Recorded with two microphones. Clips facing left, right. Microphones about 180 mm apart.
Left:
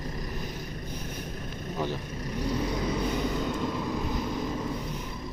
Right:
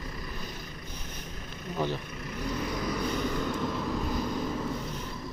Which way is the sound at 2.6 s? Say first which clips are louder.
Even; 25° left (ahead or behind).